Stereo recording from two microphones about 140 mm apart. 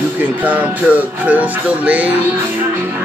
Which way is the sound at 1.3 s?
10° right (ahead or behind).